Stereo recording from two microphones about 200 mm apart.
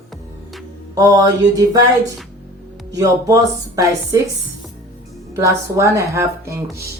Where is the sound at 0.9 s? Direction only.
20° right (ahead or behind).